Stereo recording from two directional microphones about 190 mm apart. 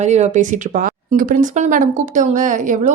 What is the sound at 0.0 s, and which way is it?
A woman's voice, 35° right (ahead or behind).